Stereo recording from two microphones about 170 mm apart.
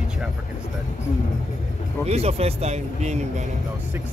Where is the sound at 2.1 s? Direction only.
35° right (ahead or behind).